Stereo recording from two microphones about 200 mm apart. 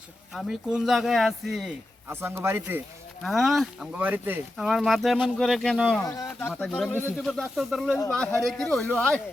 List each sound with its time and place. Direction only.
0.3 s speech: centre (ahead or behind)
2.0 s speech: 10° right (ahead or behind)
6.0 s speech: 20° left (ahead or behind)
6.5 s speech: 5° left (ahead or behind)